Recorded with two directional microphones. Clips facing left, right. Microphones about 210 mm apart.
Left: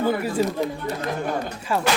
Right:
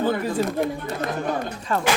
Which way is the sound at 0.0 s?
10° left (ahead or behind).